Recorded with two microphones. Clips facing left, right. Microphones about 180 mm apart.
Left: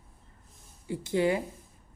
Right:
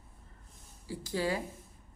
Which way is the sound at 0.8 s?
20° left (ahead or behind).